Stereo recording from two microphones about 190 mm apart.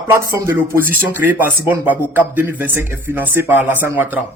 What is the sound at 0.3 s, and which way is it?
A man's voice, 15° right (ahead or behind).